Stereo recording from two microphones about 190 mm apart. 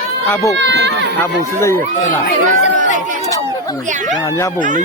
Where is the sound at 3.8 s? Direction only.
40° right (ahead or behind).